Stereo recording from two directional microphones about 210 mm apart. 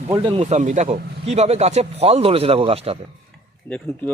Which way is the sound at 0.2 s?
25° right (ahead or behind).